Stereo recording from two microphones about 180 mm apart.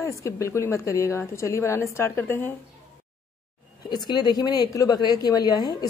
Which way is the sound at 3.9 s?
25° left (ahead or behind).